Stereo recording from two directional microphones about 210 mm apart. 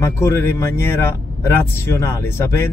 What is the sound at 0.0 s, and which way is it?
Speech, 15° left (ahead or behind).